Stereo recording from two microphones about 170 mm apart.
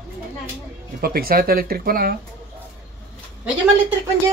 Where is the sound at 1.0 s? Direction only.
60° right (ahead or behind).